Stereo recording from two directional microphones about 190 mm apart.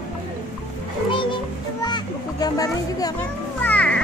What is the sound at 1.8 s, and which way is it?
Children playing, 20° left (ahead or behind).